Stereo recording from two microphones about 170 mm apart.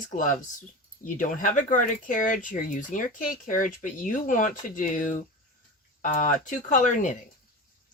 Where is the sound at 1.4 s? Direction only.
50° left (ahead or behind).